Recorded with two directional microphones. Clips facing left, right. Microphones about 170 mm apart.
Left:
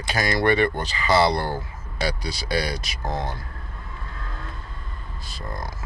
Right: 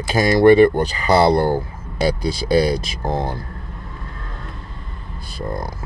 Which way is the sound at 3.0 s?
30° right (ahead or behind).